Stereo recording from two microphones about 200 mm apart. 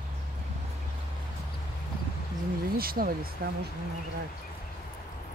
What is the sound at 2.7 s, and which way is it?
Speech, 50° right (ahead or behind).